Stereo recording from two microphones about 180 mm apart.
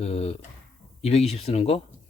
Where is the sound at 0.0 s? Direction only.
35° left (ahead or behind).